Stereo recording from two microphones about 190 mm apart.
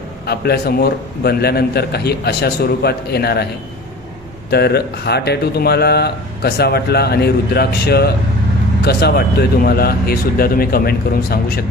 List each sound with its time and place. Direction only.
0.3 s speech: 55° left (ahead or behind)
4.5 s speech: 55° left (ahead or behind)